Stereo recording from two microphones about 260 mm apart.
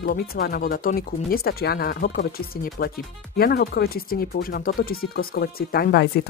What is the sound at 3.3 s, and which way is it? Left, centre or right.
Speech, left.